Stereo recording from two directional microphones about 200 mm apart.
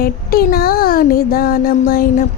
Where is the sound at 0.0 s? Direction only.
50° left (ahead or behind).